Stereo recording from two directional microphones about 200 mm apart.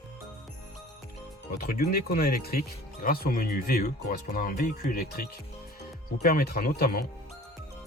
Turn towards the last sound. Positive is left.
turn(degrees=50)  # may be behind; listen again after turning